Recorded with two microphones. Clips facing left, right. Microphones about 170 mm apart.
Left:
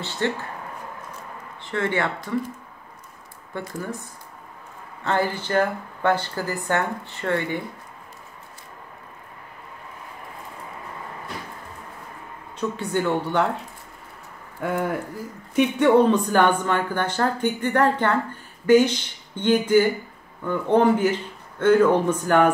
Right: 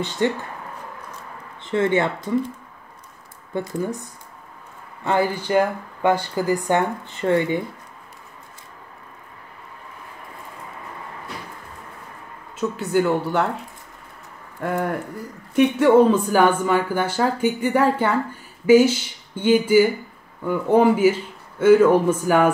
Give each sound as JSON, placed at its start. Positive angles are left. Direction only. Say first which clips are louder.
{"t": 0.2, "sound": "speech", "louder": "right 4 dB", "side_deg": -15}
{"t": 1.7, "sound": "speech", "louder": "right 5 dB", "side_deg": -20}
{"t": 5.0, "sound": "speech", "louder": "right 3 dB", "side_deg": -15}
{"t": 12.5, "sound": "speech", "louder": "right 4 dB", "side_deg": -5}
{"t": 14.6, "sound": "speech", "louder": "right 1 dB", "side_deg": 0}